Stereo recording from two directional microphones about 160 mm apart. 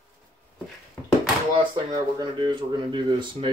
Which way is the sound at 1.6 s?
30° right (ahead or behind).